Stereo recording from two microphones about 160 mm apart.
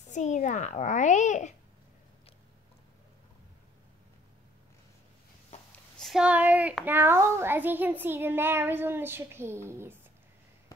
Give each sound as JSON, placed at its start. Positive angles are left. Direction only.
{"t": 0.0, "sound": "a child's voice", "side_deg": 50}
{"t": 5.9, "sound": "a child's voice", "side_deg": 0}